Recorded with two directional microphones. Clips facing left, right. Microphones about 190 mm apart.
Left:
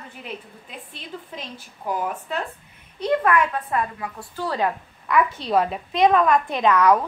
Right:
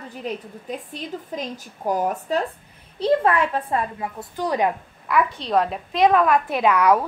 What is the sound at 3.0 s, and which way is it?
A child's voice, 30° right (ahead or behind).